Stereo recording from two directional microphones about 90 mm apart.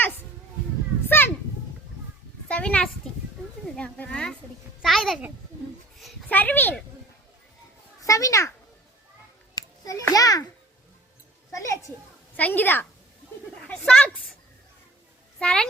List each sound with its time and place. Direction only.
1.0 s children playing: 25° left (ahead or behind)
2.5 s a sound: 15° left (ahead or behind)
6.2 s a child's voice: 20° left (ahead or behind)
8.0 s a child's voice: 35° left (ahead or behind)
9.6 s a child's voice: 40° left (ahead or behind)
11.5 s a child's voice: 35° left (ahead or behind)
12.4 s a woman's voice: 20° left (ahead or behind)
13.7 s a sound: 10° left (ahead or behind)
15.4 s a child's voice: 10° left (ahead or behind)